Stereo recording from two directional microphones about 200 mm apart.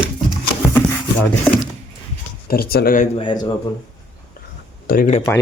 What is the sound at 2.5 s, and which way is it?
Speech, 50° left (ahead or behind).